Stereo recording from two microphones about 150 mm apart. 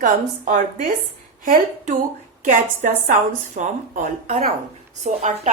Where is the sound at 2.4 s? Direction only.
60° right (ahead or behind).